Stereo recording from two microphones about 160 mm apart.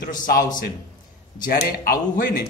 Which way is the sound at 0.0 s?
55° left (ahead or behind).